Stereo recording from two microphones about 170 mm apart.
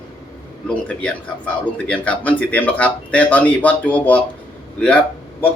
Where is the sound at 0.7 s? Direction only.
5° left (ahead or behind).